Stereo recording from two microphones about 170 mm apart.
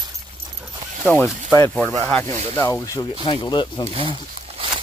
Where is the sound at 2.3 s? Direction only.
40° right (ahead or behind).